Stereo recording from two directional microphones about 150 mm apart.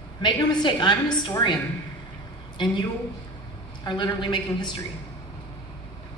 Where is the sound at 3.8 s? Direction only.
30° left (ahead or behind).